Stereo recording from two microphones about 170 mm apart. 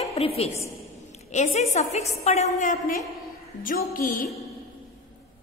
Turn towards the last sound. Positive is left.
turn(degrees=55)  # may be behind; listen again after turning